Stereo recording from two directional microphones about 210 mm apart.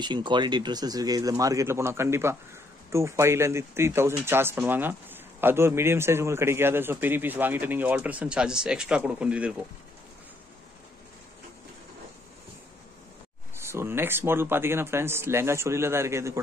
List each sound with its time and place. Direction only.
0.0 s speech: 20° right (ahead or behind); by 9.7 s 5° right (ahead or behind)
13.6 s speech: 10° right (ahead or behind)